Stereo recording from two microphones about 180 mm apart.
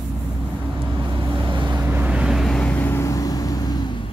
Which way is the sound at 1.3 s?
25° right (ahead or behind).